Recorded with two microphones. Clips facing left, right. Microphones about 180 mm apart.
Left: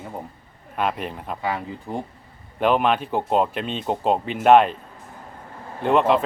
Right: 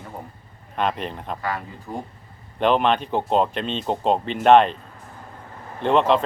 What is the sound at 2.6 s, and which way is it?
Speech, 5° left (ahead or behind).